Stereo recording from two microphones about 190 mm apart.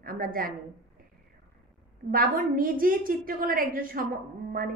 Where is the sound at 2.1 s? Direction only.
50° right (ahead or behind).